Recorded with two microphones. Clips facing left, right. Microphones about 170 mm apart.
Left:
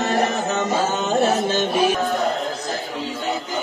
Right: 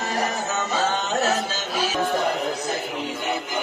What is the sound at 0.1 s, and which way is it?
Music, 55° left (ahead or behind).